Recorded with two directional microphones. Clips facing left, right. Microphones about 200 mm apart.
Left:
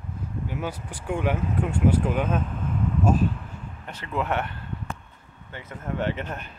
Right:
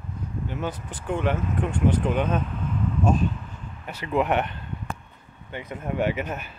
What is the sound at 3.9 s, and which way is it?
Speech, 15° right (ahead or behind).